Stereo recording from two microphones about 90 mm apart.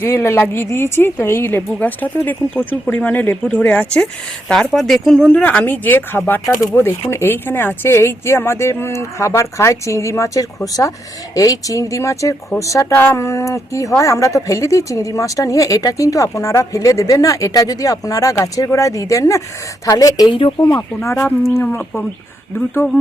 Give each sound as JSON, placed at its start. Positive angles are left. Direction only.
{"t": 0.0, "sound": "speech", "side_deg": 25}
{"t": 5.2, "sound": "a woman's voice", "side_deg": 15}
{"t": 12.9, "sound": "a woman's voice", "side_deg": 25}
{"t": 20.7, "sound": "a woman's voice", "side_deg": 30}